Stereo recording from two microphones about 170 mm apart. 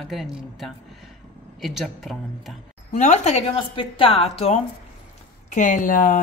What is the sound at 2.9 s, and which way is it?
A woman's voice, 40° left (ahead or behind).